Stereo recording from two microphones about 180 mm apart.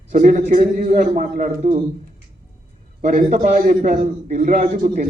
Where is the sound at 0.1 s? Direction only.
50° right (ahead or behind).